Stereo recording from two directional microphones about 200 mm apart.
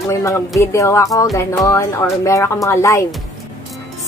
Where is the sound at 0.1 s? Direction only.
15° left (ahead or behind).